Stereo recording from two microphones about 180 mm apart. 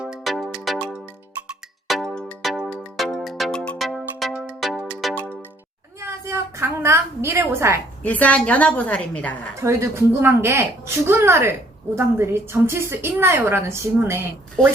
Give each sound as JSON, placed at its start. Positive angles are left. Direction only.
{"t": 0.0, "sound": "music", "side_deg": 0}
{"t": 1.9, "sound": "music", "side_deg": 0}
{"t": 6.0, "sound": "a sound", "side_deg": -15}
{"t": 8.0, "sound": "a woman's voice", "side_deg": 10}
{"t": 9.6, "sound": "a woman's voice", "side_deg": -15}